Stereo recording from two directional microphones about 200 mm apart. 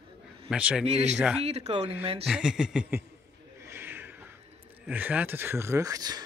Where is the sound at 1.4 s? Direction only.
30° right (ahead or behind).